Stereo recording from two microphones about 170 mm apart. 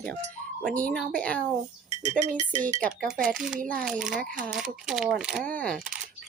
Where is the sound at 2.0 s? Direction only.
45° right (ahead or behind).